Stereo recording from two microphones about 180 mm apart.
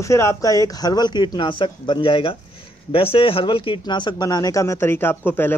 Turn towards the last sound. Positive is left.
turn(degrees=10)  # may be behind; listen again after turning